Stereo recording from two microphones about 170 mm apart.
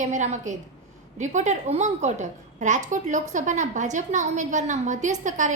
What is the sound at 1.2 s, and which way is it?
A woman's voice, 45° right (ahead or behind).